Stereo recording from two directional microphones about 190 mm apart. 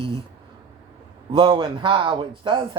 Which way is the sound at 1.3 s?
25° right (ahead or behind).